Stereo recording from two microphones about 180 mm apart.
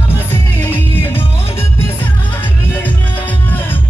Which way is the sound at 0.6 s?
10° left (ahead or behind).